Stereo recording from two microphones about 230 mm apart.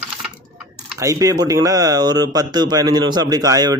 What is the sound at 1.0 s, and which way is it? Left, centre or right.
Speech, centre.